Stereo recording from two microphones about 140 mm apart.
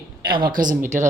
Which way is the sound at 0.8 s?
20° right (ahead or behind).